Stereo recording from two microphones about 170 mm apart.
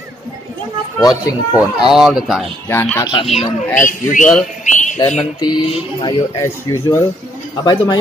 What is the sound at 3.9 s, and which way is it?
Mantra, 50° left (ahead or behind).